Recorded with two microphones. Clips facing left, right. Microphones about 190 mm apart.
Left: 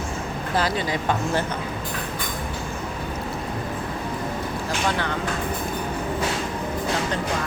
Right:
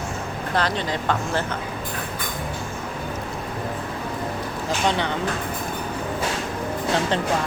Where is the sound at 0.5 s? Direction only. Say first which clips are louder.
Even; 5° left (ahead or behind).